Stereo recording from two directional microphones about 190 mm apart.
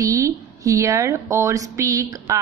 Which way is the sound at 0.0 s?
15° right (ahead or behind).